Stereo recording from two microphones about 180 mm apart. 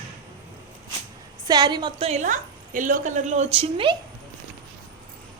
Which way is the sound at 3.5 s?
30° right (ahead or behind).